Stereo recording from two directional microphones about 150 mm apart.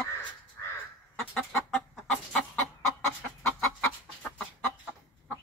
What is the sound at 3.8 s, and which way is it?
Chicken, 10° left (ahead or behind).